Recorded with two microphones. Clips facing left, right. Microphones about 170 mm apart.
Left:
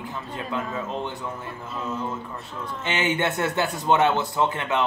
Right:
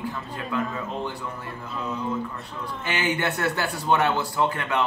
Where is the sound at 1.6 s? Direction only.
Centre (ahead or behind).